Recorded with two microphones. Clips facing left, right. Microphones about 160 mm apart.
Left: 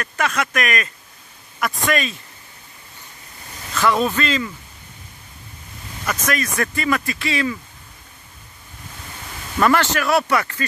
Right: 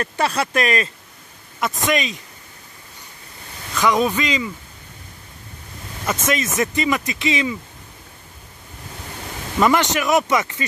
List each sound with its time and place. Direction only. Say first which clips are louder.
0.0 s speech: right 2 dB; 30° right (ahead or behind)
1.6 s speech: right 1 dB; 20° right (ahead or behind)
3.7 s speech: right 1 dB; 15° right (ahead or behind)
6.2 s speech: right 2 dB; 20° right (ahead or behind)
9.6 s speech: even; 15° right (ahead or behind)